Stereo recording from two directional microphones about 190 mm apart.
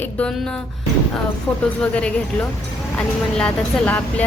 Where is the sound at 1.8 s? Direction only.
5° left (ahead or behind).